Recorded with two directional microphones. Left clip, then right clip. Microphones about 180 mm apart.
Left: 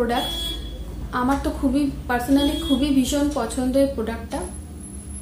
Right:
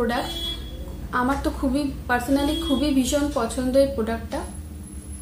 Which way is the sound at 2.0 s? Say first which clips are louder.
Even; 5° right (ahead or behind).